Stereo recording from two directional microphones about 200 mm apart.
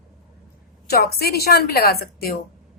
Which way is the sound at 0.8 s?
50° left (ahead or behind).